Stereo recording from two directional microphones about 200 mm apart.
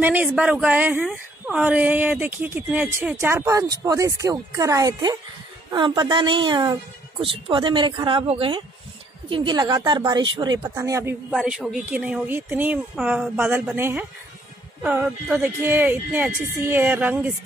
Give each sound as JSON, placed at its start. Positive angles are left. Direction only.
{"t": 0.0, "sound": "a woman's voice", "side_deg": -10}
{"t": 11.2, "sound": "a woman's voice", "side_deg": 0}